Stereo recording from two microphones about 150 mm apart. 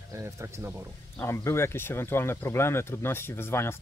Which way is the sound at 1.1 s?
20° left (ahead or behind).